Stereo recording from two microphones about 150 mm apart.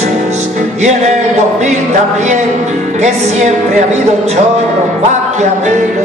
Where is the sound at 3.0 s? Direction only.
50° right (ahead or behind).